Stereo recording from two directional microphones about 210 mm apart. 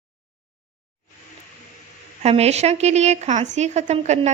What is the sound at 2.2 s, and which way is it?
A woman's voice, 30° right (ahead or behind).